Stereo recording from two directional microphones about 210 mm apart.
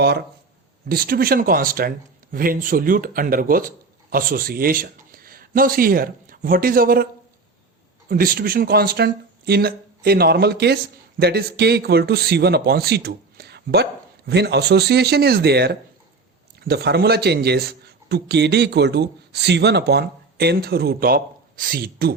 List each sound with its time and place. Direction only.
0.9 s a man's voice: 45° right (ahead or behind)